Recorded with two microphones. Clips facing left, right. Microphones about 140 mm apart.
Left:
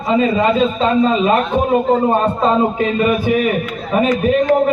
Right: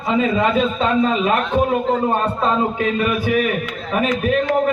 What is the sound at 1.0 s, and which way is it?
Speech, 5° left (ahead or behind).